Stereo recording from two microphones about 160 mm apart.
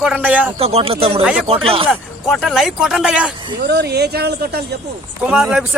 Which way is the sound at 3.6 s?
90° right.